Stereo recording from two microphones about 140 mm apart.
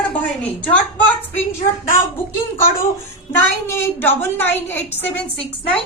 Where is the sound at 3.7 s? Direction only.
15° left (ahead or behind).